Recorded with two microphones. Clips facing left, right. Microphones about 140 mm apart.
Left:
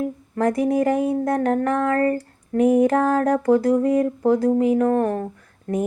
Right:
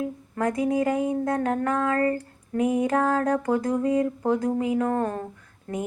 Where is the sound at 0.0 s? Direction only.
35° left (ahead or behind).